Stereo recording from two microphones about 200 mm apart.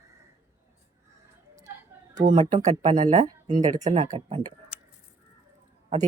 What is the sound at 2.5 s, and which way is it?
A man's voice, 35° right (ahead or behind).